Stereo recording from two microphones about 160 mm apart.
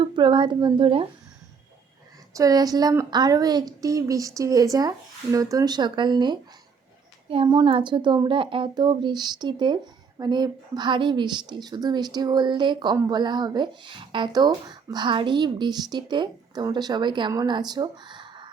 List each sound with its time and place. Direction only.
0.0 s a woman's voice: 30° right (ahead or behind)
2.3 s speech: 25° right (ahead or behind)